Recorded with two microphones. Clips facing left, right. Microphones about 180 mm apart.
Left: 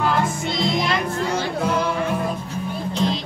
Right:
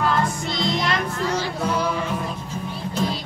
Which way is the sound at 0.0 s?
Centre (ahead or behind).